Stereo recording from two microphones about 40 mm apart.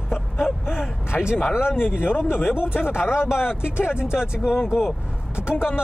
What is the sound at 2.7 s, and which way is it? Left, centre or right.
Speech, left.